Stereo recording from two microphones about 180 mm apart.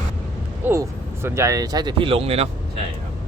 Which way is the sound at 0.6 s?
10° right (ahead or behind).